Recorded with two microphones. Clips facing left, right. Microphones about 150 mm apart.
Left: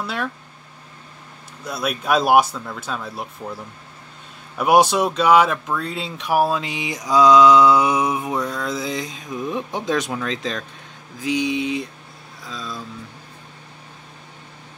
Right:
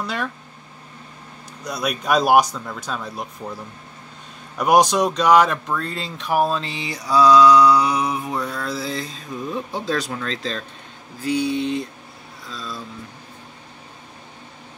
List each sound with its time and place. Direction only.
0.0 s speech: centre (ahead or behind)
1.6 s speech: centre (ahead or behind)
4.6 s speech: 5° left (ahead or behind); by 8.4 s 20° left (ahead or behind)
8.4 s speech: centre (ahead or behind)
8.6 s speech: 20° left (ahead or behind)
12.4 s a sound: centre (ahead or behind)